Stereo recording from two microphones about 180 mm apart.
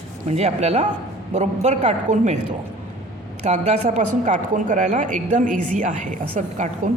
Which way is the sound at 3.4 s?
40° right (ahead or behind).